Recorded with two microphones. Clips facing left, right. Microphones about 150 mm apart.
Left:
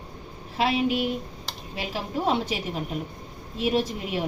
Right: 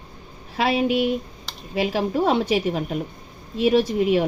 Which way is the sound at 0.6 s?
70° right (ahead or behind).